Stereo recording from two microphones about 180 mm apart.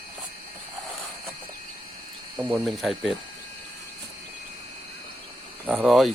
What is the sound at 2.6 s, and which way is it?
Speech, centre (ahead or behind).